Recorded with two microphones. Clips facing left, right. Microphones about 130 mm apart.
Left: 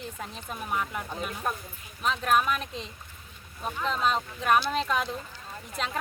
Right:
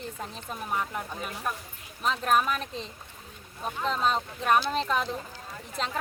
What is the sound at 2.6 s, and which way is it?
Speech, 35° right (ahead or behind).